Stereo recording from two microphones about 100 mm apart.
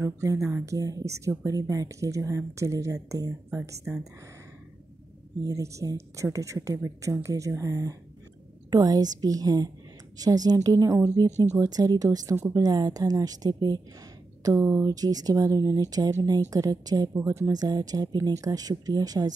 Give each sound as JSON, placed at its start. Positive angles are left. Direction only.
{"t": 0.0, "sound": "speech", "side_deg": -30}
{"t": 3.9, "sound": "speech", "side_deg": -20}
{"t": 5.4, "sound": "speech", "side_deg": -35}
{"t": 14.4, "sound": "speech", "side_deg": -30}
{"t": 17.1, "sound": "speech", "side_deg": -25}
{"t": 17.5, "sound": "speech", "side_deg": -40}